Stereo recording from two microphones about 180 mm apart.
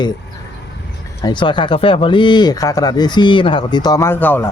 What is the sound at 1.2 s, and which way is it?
Speech, 25° left (ahead or behind).